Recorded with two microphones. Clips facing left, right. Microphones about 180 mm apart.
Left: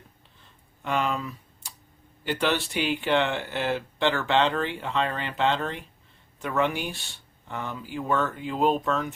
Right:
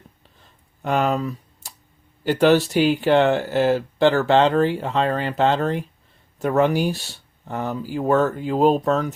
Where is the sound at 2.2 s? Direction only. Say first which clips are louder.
Right 10 dB; 40° right (ahead or behind).